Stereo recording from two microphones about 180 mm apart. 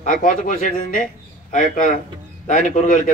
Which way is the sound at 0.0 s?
45° left (ahead or behind).